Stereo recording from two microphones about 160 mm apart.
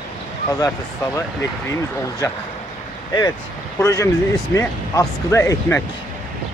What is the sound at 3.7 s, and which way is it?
Speech, 20° left (ahead or behind).